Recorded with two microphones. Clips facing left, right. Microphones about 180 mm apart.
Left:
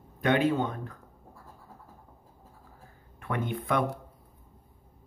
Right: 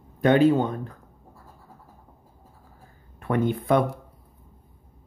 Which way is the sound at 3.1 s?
35° right (ahead or behind).